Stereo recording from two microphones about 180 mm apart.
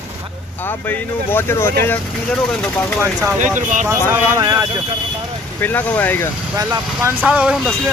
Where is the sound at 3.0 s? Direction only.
15° right (ahead or behind).